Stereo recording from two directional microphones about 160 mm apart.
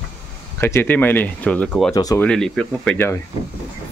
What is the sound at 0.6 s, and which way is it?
Speech, 15° left (ahead or behind).